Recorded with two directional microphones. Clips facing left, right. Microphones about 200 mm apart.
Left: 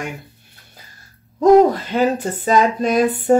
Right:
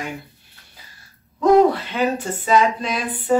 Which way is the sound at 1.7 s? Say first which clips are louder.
Left 4 dB; 40° left (ahead or behind).